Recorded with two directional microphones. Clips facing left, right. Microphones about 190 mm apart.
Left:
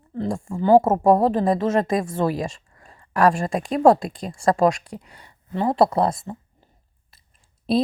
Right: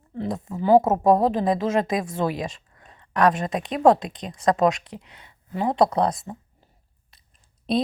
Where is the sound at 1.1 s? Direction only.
5° left (ahead or behind).